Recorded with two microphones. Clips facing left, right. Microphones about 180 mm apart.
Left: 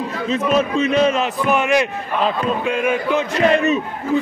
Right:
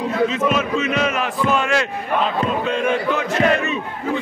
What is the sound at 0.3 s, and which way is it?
Speech, 35° left (ahead or behind).